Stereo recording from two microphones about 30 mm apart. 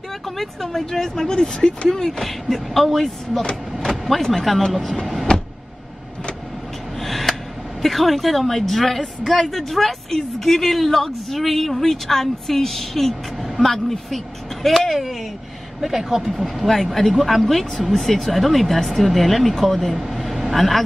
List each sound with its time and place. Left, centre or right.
0.4 s speech: centre
2.1 s speech: centre
3.8 s vehicle: centre
4.5 s speech: centre
7.0 s a sound: centre
7.8 s speech: centre
16.4 s speech: centre
20.0 s vehicle: centre
20.5 s speech: centre